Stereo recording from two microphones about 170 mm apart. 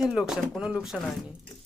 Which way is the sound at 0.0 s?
5° right (ahead or behind).